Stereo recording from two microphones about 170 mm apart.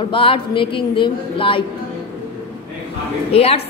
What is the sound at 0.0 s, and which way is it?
A woman's voice, 30° left (ahead or behind).